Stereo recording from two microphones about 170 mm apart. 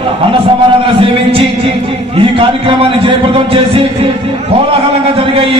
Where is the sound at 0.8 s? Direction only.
30° right (ahead or behind).